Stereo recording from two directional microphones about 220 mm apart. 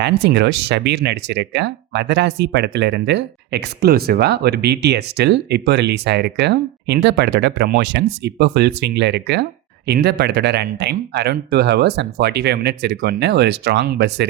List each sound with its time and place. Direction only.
0.0 s speech: 50° right (ahead or behind)